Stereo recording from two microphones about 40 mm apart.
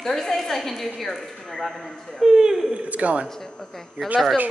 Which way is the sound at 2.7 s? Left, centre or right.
Right.